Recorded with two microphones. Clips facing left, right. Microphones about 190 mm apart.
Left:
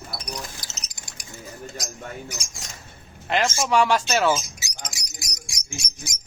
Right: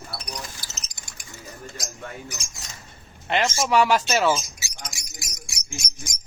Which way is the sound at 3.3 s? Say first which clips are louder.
Even; centre (ahead or behind).